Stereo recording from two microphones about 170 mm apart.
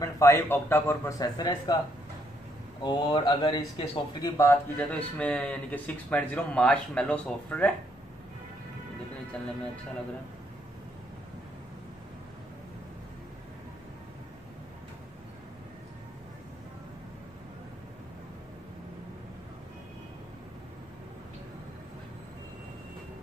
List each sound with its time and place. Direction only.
0.0 s speech: 15° left (ahead or behind)
2.8 s speech: 25° left (ahead or behind); by 7.7 s 5° left (ahead or behind)